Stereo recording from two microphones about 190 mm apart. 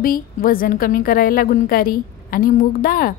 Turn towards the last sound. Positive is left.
turn(degrees=50)  # may be behind; listen again after turning